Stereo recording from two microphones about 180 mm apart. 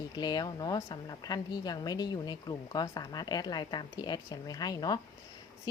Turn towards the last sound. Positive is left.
turn(degrees=20)  # may be behind; listen again after turning